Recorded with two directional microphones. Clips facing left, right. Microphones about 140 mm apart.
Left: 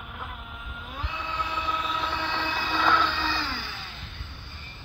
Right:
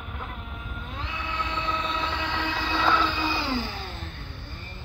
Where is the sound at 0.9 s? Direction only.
15° left (ahead or behind).